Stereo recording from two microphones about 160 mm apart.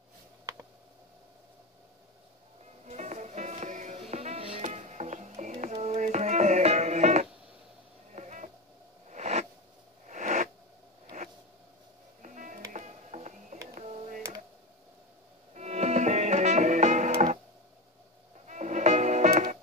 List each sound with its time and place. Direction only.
2.9 s music: 45° right (ahead or behind)
8.1 s a sound: 45° right (ahead or behind)
12.2 s music: 55° right (ahead or behind)
13.7 s a sound: 45° right (ahead or behind)
15.5 s music: 45° right (ahead or behind)
18.5 s music: 50° right (ahead or behind)